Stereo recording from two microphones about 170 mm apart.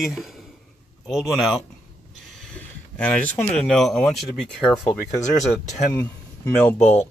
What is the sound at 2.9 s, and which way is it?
Speech, 5° left (ahead or behind).